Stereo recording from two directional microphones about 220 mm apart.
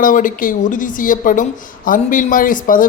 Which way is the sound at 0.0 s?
40° left (ahead or behind).